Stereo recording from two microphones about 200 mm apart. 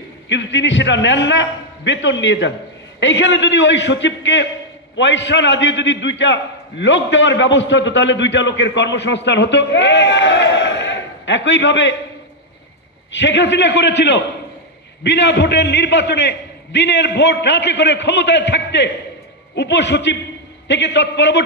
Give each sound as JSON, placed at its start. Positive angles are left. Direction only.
{"t": 0.3, "sound": "a man's voice", "side_deg": 65}
{"t": 13.2, "sound": "a man's voice", "side_deg": 65}